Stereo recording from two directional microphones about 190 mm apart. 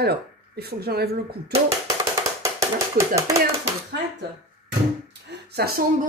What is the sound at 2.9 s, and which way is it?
Speech, 15° right (ahead or behind).